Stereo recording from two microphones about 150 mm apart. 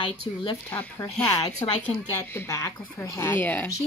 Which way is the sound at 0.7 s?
15° left (ahead or behind).